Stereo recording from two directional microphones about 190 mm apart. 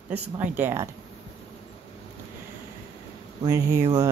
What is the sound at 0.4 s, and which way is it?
Speech, 10° right (ahead or behind).